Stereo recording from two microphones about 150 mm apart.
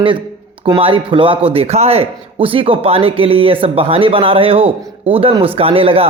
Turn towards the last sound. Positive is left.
turn(degrees=-40)  # may be behind; listen again after turning